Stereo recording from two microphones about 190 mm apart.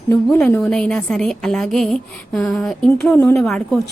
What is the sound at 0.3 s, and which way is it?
A woman's voice, 10° left (ahead or behind).